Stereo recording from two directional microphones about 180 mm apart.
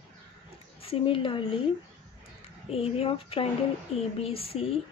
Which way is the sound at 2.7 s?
30° left (ahead or behind).